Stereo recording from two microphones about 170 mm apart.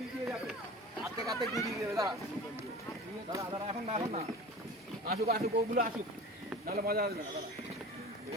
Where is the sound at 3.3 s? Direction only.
25° right (ahead or behind).